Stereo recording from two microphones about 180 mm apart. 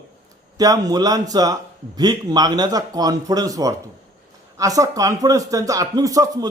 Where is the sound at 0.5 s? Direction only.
20° right (ahead or behind).